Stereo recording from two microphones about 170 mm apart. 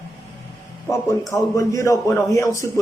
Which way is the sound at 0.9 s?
15° left (ahead or behind).